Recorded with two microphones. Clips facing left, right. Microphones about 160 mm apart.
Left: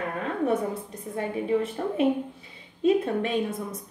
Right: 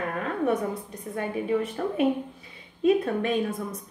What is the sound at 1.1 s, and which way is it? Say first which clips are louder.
A woman's voice: left 1 dB; 30° left (ahead or behind).